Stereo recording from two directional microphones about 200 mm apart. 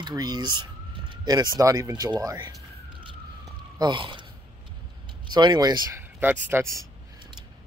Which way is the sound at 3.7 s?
20° right (ahead or behind).